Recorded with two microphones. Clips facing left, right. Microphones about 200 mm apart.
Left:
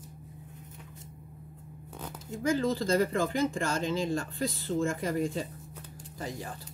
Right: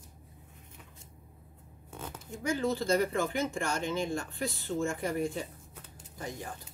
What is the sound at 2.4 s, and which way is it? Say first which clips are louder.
Speech: left 2 dB; 90° left.